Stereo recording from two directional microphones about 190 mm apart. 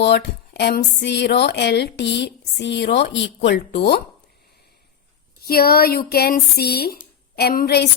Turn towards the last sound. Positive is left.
turn(degrees=60)  # may be behind; listen again after turning